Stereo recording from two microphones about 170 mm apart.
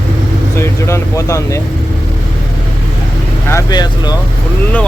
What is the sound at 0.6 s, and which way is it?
Vehicle, 15° left (ahead or behind).